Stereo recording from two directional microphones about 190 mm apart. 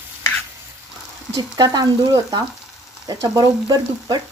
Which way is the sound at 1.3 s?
20° right (ahead or behind).